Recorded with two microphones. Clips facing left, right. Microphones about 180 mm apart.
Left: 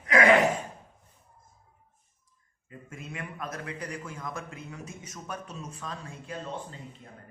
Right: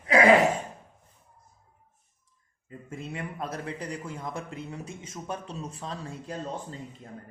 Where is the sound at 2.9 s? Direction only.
30° right (ahead or behind).